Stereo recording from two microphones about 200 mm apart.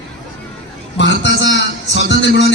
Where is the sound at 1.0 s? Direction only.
65° left (ahead or behind).